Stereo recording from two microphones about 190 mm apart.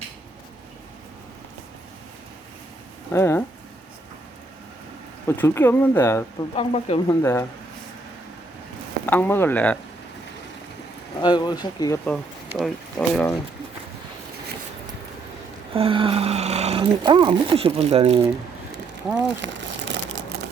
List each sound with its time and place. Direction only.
3.1 s speech: 10° left (ahead or behind)
5.4 s speech: 10° left (ahead or behind)
6.5 s speech: 30° left (ahead or behind)
7.1 s speech: 15° left (ahead or behind)
9.0 s speech: 10° left (ahead or behind)
11.2 s speech: 25° left (ahead or behind)
12.0 s speech: centre (ahead or behind)
15.7 s speech: 30° right (ahead or behind)
19.4 s crumpling: 75° right (ahead or behind)